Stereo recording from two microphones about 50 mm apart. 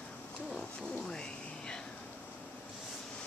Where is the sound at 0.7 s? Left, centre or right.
Centre.